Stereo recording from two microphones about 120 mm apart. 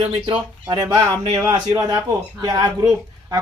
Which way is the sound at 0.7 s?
35° right (ahead or behind).